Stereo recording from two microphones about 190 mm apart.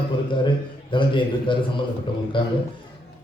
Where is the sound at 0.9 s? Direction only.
25° left (ahead or behind).